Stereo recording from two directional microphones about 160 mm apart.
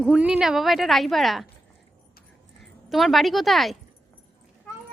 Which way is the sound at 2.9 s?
Centre (ahead or behind).